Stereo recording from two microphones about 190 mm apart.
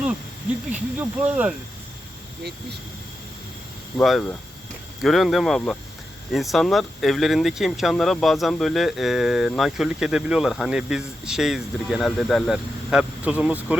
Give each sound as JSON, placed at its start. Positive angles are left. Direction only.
{"t": 0.7, "sound": "speech", "side_deg": -10}
{"t": 4.0, "sound": "speech", "side_deg": 0}